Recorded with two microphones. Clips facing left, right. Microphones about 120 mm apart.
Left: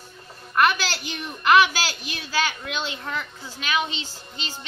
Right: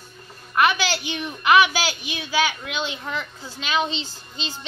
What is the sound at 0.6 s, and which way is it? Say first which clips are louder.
A woman's voice: right 1 dB; 5° right (ahead or behind).